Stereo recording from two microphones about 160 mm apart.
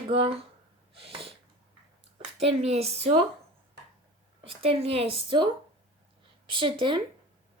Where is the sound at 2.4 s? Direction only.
40° right (ahead or behind).